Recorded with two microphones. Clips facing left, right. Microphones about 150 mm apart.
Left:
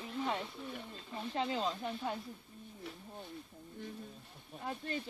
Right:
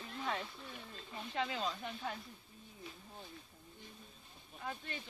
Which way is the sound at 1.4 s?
30° left (ahead or behind).